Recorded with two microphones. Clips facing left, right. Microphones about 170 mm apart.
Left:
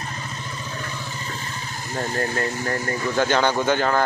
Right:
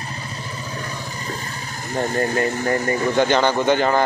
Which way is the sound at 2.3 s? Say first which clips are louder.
Right 5 dB; 15° right (ahead or behind).